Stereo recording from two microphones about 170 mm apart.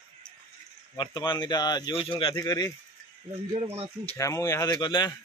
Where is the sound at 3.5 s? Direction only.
35° right (ahead or behind).